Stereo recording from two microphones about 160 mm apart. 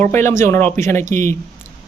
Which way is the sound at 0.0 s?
15° left (ahead or behind).